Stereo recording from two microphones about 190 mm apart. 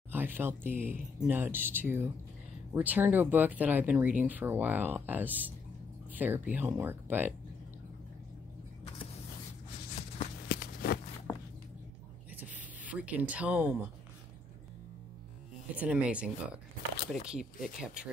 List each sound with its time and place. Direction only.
0.1 s speech: 10° right (ahead or behind)
10.5 s walk: 55° left (ahead or behind)
12.4 s a sound: 10° right (ahead or behind)
15.7 s speech: 5° right (ahead or behind)